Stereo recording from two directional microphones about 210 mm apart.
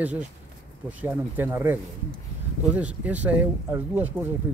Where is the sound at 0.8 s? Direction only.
5° right (ahead or behind).